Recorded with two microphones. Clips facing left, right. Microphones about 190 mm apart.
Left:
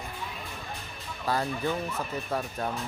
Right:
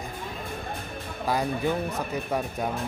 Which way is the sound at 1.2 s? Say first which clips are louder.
Right 3 dB; 15° right (ahead or behind).